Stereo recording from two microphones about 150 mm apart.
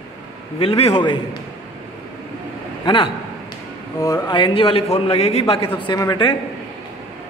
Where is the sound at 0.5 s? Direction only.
40° left (ahead or behind).